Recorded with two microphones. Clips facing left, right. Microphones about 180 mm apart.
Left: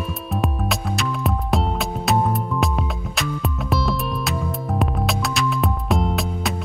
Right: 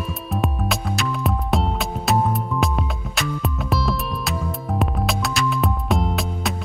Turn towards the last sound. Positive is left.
turn(degrees=0)  # may be behind; listen again after turning